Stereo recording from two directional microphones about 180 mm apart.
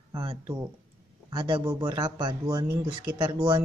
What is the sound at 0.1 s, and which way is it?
Speech, 25° right (ahead or behind).